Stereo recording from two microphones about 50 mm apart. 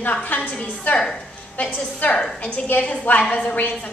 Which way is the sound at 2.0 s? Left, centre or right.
Left.